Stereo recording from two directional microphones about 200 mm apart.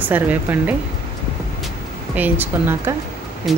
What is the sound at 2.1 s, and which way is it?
Speech, 10° right (ahead or behind).